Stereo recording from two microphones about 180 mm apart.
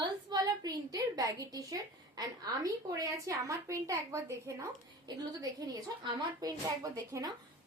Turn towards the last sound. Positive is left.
turn(degrees=-20)  # may be behind; listen again after turning